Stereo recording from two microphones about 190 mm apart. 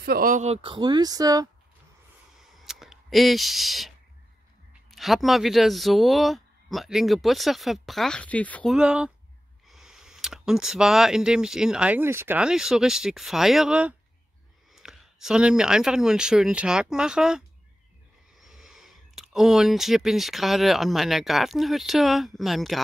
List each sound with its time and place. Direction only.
0.0 s speech: 50° right (ahead or behind); by 1.5 s 20° right (ahead or behind)
2.5 s a sound: centre (ahead or behind)
4.9 s speech: centre (ahead or behind)
8.7 s speech: 5° right (ahead or behind)
18.4 s speech: centre (ahead or behind)